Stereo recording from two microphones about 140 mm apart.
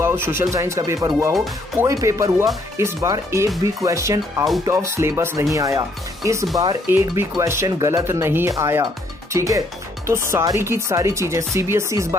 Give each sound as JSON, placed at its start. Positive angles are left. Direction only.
{"t": 0.0, "sound": "speech", "side_deg": -15}